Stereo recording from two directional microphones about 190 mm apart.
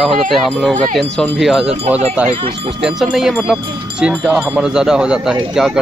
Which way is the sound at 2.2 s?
45° right (ahead or behind).